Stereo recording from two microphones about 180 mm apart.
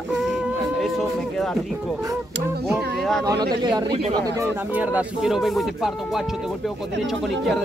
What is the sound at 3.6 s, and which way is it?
Speech, 20° right (ahead or behind).